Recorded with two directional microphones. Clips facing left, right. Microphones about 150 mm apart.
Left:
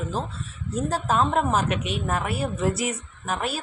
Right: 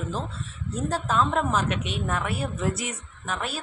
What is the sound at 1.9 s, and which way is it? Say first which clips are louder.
Speech: left 2 dB; 40° left (ahead or behind).